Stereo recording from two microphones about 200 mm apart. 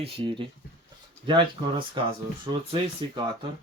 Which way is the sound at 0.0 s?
25° right (ahead or behind).